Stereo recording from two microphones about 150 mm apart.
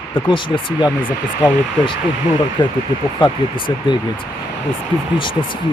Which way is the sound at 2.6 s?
30° left (ahead or behind).